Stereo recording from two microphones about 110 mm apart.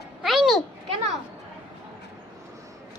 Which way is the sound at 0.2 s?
Centre (ahead or behind).